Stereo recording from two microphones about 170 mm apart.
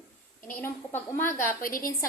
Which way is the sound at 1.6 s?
55° left (ahead or behind).